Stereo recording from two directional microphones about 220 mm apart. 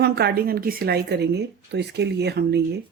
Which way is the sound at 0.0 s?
45° right (ahead or behind).